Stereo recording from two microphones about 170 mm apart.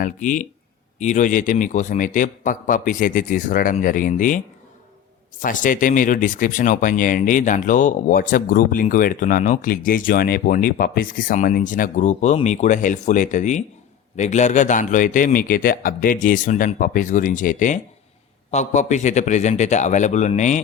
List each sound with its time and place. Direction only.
0.0 s speech: 50° left (ahead or behind)
5.4 s speech: 50° left (ahead or behind)